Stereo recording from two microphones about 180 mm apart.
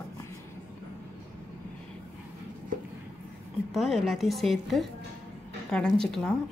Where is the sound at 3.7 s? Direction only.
Centre (ahead or behind).